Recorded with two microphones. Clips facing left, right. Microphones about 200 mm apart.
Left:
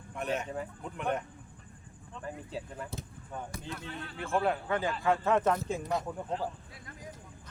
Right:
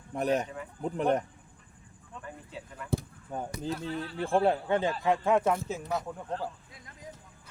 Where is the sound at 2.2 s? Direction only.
35° left (ahead or behind).